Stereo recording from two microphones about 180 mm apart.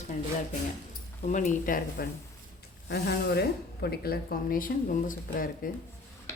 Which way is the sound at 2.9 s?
65° left (ahead or behind).